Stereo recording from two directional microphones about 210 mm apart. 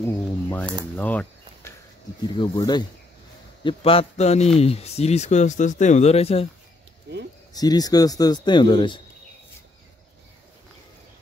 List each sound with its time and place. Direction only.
0.0 s speech: 10° left (ahead or behind)
0.9 s a sound: 5° left (ahead or behind)
2.2 s a man's voice: 20° left (ahead or behind)
7.1 s speech: 55° right (ahead or behind)
7.5 s a man's voice: 20° left (ahead or behind)